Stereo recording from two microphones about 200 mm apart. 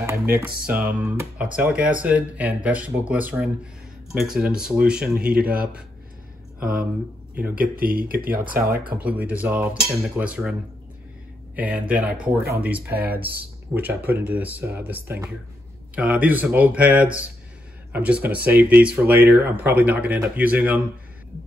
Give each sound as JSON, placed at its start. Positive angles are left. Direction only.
{"t": 0.0, "sound": "music", "side_deg": -10}
{"t": 0.7, "sound": "speech", "side_deg": -10}
{"t": 6.6, "sound": "speech", "side_deg": -45}
{"t": 7.3, "sound": "speech", "side_deg": -10}
{"t": 7.6, "sound": "speech", "side_deg": -45}
{"t": 8.9, "sound": "speech", "side_deg": -5}
{"t": 11.5, "sound": "speech", "side_deg": -5}